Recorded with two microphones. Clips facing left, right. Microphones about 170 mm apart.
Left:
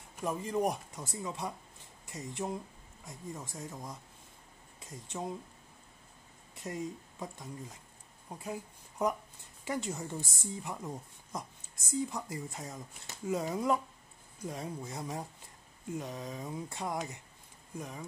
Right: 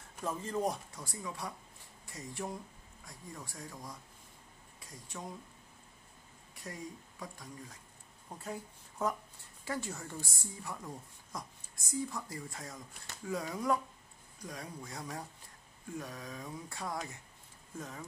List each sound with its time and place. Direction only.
0.2 s a woman's voice: 15° left (ahead or behind)
6.5 s speech: 25° left (ahead or behind)
8.3 s a woman's voice: 10° left (ahead or behind)